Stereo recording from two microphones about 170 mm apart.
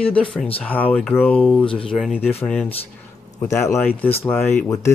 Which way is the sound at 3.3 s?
15° left (ahead or behind).